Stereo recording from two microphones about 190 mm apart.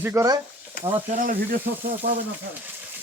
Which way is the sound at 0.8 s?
45° left (ahead or behind).